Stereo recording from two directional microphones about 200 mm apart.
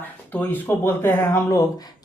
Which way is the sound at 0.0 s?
10° left (ahead or behind).